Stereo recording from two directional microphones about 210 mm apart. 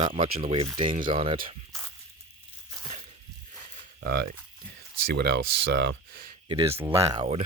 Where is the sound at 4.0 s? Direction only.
50° right (ahead or behind).